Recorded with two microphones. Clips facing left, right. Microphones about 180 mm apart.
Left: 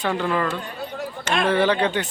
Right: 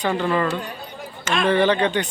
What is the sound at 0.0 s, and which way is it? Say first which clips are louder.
Speech: right 2 dB; centre (ahead or behind).